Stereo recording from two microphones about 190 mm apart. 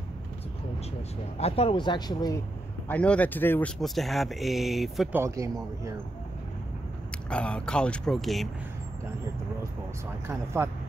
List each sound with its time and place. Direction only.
1.4 s speech: 30° left (ahead or behind)
2.9 s speech: 5° left (ahead or behind)
5.2 s speech: 15° right (ahead or behind)
7.2 s speech: 5° left (ahead or behind)
10.6 s speech: 15° right (ahead or behind)